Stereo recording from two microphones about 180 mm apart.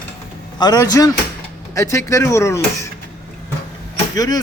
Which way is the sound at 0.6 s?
20° left (ahead or behind).